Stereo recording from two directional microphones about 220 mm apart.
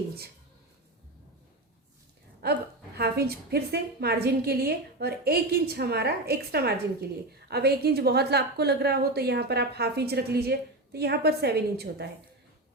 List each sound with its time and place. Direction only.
2.4 s a woman's voice: 45° right (ahead or behind)